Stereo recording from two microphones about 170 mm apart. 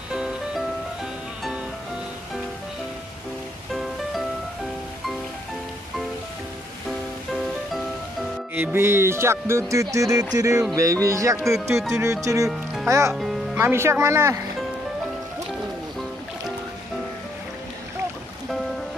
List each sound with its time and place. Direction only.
0.1 s music: 5° right (ahead or behind)
8.5 s speech: 15° right (ahead or behind)